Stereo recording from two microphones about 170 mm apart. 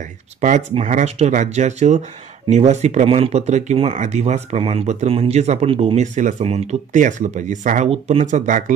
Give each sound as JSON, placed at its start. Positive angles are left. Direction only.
{"t": 0.7, "sound": "speech", "side_deg": -45}
{"t": 7.9, "sound": "speech", "side_deg": -35}